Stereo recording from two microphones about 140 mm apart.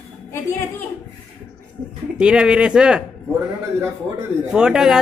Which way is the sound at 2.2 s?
5° right (ahead or behind).